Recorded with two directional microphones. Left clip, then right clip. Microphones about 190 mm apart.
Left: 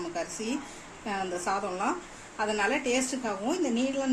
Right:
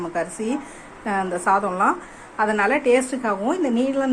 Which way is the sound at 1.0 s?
10° right (ahead or behind).